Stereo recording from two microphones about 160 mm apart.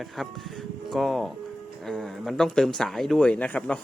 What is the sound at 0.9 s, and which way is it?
Speech, centre (ahead or behind).